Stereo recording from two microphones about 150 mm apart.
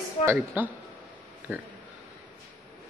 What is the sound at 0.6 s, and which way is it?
Speech, 15° right (ahead or behind).